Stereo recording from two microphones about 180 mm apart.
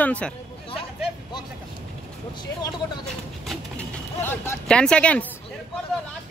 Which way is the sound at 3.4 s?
5° left (ahead or behind).